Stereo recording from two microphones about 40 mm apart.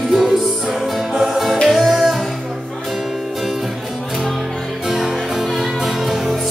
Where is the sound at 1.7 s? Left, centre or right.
Centre.